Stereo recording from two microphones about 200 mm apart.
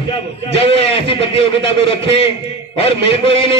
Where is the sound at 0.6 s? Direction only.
25° left (ahead or behind).